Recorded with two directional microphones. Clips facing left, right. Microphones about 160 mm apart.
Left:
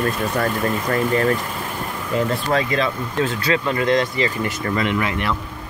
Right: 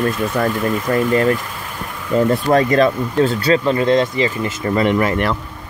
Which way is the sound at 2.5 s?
45° right (ahead or behind).